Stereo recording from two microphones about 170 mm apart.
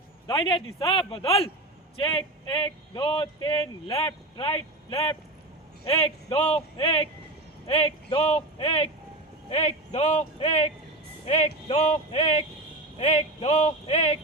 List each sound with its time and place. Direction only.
0.3 s speech: 30° left (ahead or behind)